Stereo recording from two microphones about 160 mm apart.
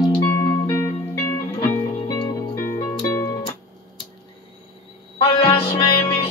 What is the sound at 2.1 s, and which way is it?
Music, 25° left (ahead or behind).